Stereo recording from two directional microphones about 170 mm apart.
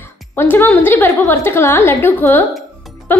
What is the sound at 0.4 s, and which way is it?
A woman's voice, 10° left (ahead or behind).